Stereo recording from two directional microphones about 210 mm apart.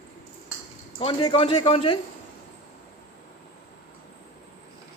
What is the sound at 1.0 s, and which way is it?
A man's voice, 25° left (ahead or behind).